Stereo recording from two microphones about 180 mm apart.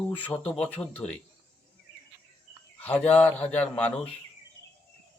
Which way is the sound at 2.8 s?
10° left (ahead or behind).